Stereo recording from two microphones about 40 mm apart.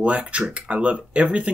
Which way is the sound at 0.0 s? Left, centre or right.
Right.